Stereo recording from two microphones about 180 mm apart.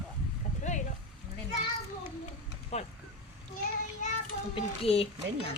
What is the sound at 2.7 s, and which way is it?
Speech, 40° left (ahead or behind).